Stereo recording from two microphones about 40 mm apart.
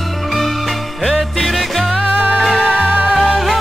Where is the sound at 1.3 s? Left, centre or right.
Centre.